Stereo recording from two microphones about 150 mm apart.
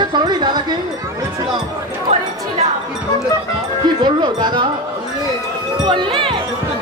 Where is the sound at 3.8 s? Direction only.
30° right (ahead or behind).